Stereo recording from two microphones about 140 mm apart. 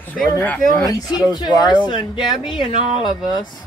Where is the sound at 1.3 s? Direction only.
30° left (ahead or behind).